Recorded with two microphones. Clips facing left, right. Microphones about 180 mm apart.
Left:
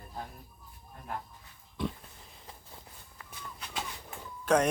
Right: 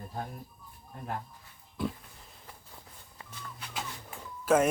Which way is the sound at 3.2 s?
25° right (ahead or behind).